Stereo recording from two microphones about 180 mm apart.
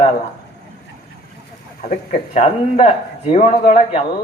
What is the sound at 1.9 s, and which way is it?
Speech, 40° left (ahead or behind).